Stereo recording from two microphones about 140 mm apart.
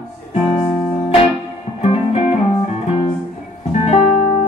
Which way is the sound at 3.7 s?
55° left (ahead or behind).